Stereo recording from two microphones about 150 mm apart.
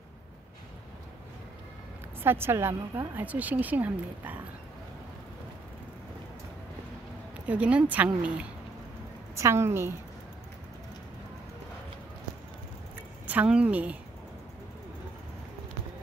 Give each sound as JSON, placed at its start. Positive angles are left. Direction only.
{"t": 2.2, "sound": "a woman's voice", "side_deg": -15}
{"t": 7.4, "sound": "a woman's voice", "side_deg": -10}
{"t": 13.3, "sound": "a woman's voice", "side_deg": -10}